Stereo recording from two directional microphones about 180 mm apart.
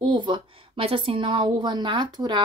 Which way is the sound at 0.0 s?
25° right (ahead or behind).